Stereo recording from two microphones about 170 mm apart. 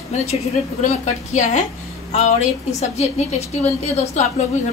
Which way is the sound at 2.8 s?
40° left (ahead or behind).